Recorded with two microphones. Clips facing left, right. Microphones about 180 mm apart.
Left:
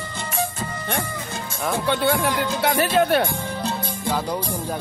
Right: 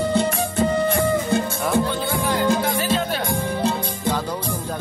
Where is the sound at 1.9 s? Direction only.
70° left (ahead or behind).